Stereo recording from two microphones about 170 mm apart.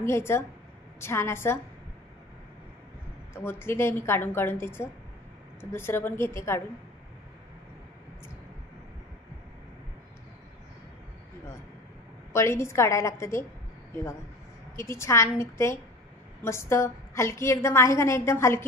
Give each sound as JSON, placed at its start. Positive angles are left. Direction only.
{"t": 0.0, "sound": "a woman's voice", "side_deg": 15}
{"t": 3.3, "sound": "a woman's voice", "side_deg": 15}
{"t": 12.3, "sound": "a woman's voice", "side_deg": 15}
{"t": 14.8, "sound": "a woman's voice", "side_deg": 15}